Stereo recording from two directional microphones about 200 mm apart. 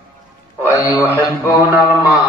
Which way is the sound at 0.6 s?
10° right (ahead or behind).